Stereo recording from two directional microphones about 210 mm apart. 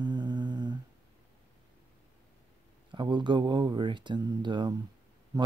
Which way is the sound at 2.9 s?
20° right (ahead or behind).